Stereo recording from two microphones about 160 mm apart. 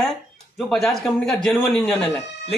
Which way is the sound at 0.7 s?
Centre (ahead or behind).